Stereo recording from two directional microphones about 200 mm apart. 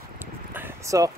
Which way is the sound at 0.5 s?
15° right (ahead or behind).